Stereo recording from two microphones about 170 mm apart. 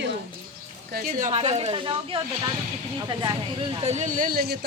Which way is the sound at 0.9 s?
55° right (ahead or behind).